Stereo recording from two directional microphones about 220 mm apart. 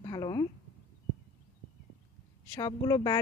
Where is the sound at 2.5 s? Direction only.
15° left (ahead or behind).